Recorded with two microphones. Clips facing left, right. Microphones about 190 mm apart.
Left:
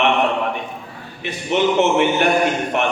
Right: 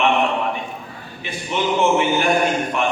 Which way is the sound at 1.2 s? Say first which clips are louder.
Left 5 dB; 65° left (ahead or behind).